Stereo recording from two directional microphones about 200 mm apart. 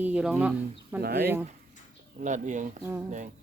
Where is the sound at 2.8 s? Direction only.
10° right (ahead or behind).